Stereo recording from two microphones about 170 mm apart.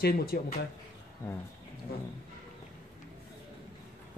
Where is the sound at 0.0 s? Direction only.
65° left (ahead or behind).